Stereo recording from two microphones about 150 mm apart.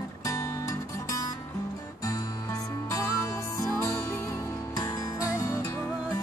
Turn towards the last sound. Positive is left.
turn(degrees=20)  # may be behind; listen again after turning